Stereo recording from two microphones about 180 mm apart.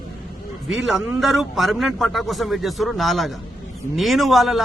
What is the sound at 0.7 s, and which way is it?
A man's voice, centre (ahead or behind).